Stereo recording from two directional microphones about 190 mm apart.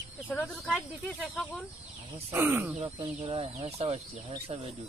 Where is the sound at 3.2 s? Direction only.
30° right (ahead or behind).